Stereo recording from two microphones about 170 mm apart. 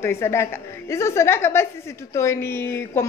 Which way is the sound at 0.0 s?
15° left (ahead or behind).